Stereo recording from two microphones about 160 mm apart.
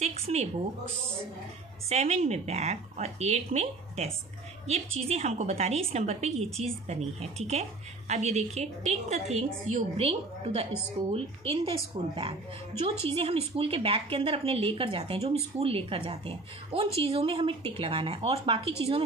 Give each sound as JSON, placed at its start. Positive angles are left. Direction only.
{"t": 0.0, "sound": "a woman's voice", "side_deg": -40}
{"t": 1.9, "sound": "a woman's voice", "side_deg": -45}